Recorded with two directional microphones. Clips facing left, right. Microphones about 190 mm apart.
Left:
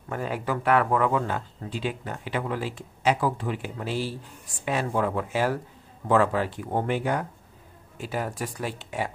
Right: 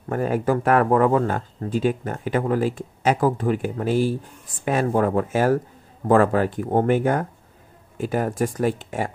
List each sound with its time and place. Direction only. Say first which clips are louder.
0.1 s speech: right 8 dB; 45° right (ahead or behind)